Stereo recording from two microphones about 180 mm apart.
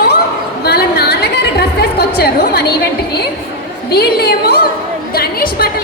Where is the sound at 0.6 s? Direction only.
60° left (ahead or behind).